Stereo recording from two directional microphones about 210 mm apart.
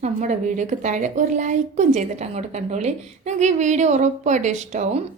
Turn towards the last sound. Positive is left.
turn(degrees=-35)  # may be behind; listen again after turning